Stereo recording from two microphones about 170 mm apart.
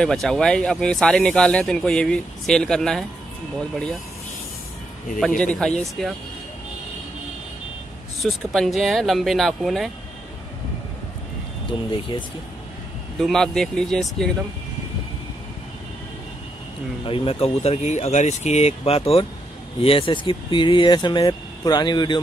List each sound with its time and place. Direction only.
0.0 s speech: 5° left (ahead or behind)
5.4 s speech: 5° left (ahead or behind)
8.2 s speech: centre (ahead or behind)
11.9 s speech: 30° left (ahead or behind)
13.2 s speech: centre (ahead or behind)
17.0 s speech: 30° left (ahead or behind)